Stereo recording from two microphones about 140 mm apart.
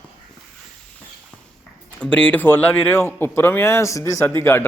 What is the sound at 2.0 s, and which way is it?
A man's voice, 10° left (ahead or behind).